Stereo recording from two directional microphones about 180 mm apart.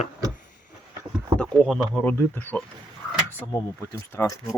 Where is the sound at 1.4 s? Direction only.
Centre (ahead or behind).